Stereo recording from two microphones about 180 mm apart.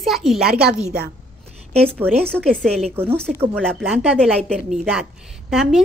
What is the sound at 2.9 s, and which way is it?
Speech, 10° right (ahead or behind).